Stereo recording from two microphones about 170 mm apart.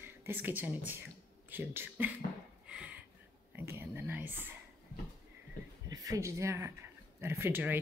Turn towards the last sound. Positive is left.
turn(degrees=-10)  # may be behind; listen again after turning